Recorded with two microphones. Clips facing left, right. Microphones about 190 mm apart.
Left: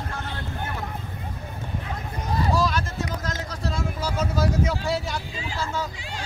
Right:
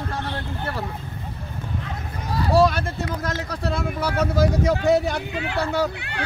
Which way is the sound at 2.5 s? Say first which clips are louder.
Right 11 dB; 60° right (ahead or behind).